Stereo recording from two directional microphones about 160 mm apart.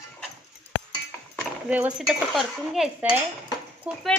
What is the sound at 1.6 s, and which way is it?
Cutlery, 10° right (ahead or behind).